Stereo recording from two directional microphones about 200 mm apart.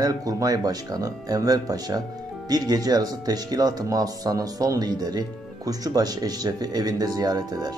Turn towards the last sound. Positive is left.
turn(degrees=-20)  # may be behind; listen again after turning